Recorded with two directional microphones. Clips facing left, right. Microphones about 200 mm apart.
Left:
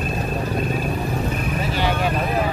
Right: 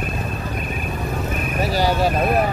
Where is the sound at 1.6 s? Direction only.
40° right (ahead or behind).